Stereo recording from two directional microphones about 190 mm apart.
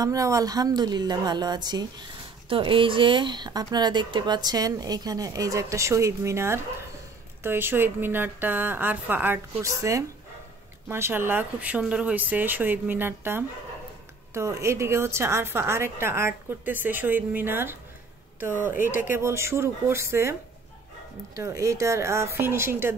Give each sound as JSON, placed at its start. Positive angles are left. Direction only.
{"t": 0.0, "sound": "a woman's voice", "side_deg": -15}
{"t": 21.4, "sound": "a woman's voice", "side_deg": -15}